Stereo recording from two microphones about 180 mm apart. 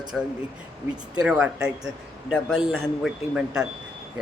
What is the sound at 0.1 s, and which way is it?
Speech, 5° right (ahead or behind).